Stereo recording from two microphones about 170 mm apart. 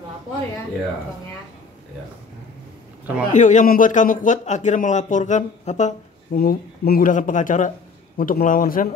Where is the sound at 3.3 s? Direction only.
45° left (ahead or behind).